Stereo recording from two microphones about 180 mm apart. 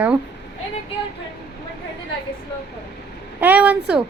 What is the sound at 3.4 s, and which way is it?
Speech, 10° right (ahead or behind).